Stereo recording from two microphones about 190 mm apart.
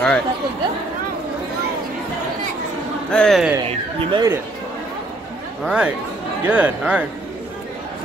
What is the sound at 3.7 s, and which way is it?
Speech, 25° right (ahead or behind).